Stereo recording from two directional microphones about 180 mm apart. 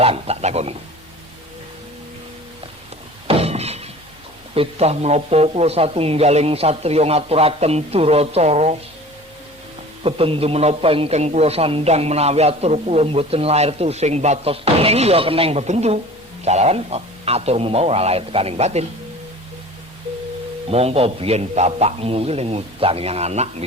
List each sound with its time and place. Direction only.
0.0 s a man's voice: 35° right (ahead or behind)
3.2 s a sound: 35° right (ahead or behind)
4.5 s a man's voice: 35° right (ahead or behind)
10.0 s a man's voice: 35° right (ahead or behind)
20.7 s a man's voice: 35° right (ahead or behind)